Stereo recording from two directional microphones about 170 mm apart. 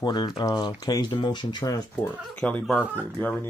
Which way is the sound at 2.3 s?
5° left (ahead or behind).